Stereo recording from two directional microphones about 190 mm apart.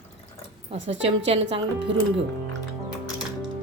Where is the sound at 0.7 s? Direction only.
30° right (ahead or behind).